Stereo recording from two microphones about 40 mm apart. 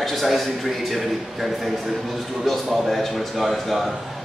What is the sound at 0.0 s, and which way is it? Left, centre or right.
A man's voice, centre.